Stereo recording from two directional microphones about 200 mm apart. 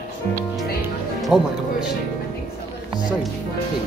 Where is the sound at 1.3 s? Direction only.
5° right (ahead or behind).